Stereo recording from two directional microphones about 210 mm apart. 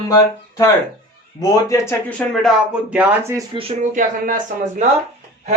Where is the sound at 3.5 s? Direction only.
30° right (ahead or behind).